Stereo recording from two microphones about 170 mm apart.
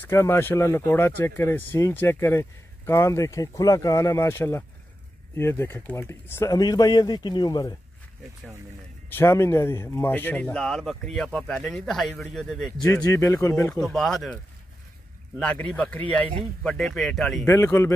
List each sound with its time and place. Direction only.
0.0 s speech: 15° left (ahead or behind)
9.1 s speech: 15° left (ahead or behind)
12.8 s speech: 20° left (ahead or behind)
13.7 s speech: centre (ahead or behind)
17.5 s speech: 15° left (ahead or behind)